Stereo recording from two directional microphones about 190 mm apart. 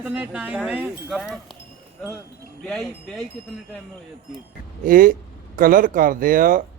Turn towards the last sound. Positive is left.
turn(degrees=-45)  # may be behind; listen again after turning